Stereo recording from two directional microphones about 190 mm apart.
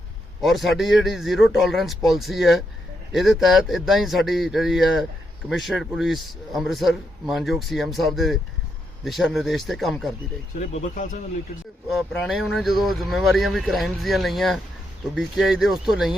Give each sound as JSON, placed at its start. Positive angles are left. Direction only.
{"t": 0.4, "sound": "a man's voice", "side_deg": 0}
{"t": 10.6, "sound": "speech", "side_deg": 35}
{"t": 11.9, "sound": "a man's voice", "side_deg": 0}